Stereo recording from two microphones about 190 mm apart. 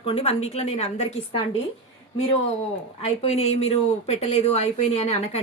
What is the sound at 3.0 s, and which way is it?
Speech, 35° left (ahead or behind).